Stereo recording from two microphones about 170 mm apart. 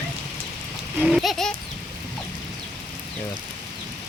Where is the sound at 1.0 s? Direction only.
Centre (ahead or behind).